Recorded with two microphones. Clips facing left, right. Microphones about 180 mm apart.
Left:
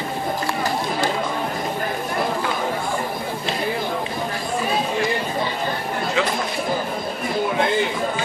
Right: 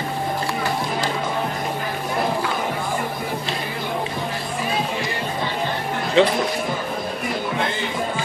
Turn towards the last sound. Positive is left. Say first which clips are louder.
# right 6 dB
turn(degrees=-30)  # may be behind; listen again after turning